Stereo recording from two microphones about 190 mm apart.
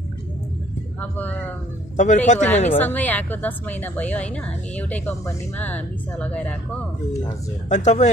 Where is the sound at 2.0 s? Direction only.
40° left (ahead or behind).